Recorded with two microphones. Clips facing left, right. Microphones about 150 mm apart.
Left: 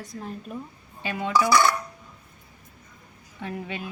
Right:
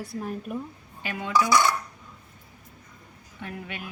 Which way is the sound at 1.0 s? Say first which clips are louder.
Left 2 dB; 25° left (ahead or behind).